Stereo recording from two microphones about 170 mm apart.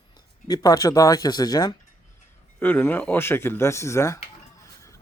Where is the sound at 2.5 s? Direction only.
10° left (ahead or behind).